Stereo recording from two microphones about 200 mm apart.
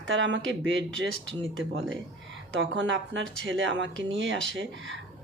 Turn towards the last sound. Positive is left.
turn(degrees=-70)  # may be behind; listen again after turning